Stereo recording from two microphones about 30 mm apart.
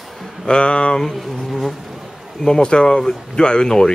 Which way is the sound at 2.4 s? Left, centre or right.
Left.